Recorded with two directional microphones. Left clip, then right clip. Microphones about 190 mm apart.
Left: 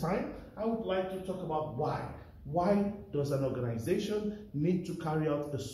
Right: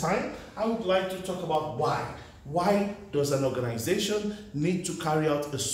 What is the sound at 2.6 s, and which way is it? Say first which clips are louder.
A man's voice: right 5 dB; 10° right (ahead or behind).